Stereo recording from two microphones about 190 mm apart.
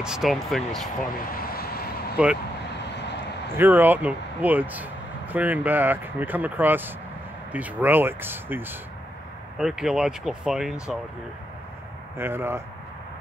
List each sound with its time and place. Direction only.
0.0 s speech: centre (ahead or behind)
1.3 s vehicle: 50° left (ahead or behind)
3.5 s speech: 10° right (ahead or behind)
12.2 s speech: 10° right (ahead or behind)